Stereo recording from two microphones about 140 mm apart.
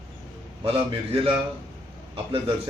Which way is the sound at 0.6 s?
40° right (ahead or behind).